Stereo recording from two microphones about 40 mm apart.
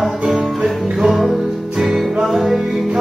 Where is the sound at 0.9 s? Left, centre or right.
Centre.